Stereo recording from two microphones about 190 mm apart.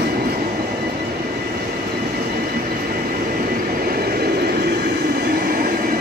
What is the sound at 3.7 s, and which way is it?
Train, 50° right (ahead or behind).